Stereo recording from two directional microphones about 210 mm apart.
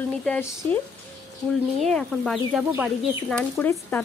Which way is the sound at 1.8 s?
5° left (ahead or behind).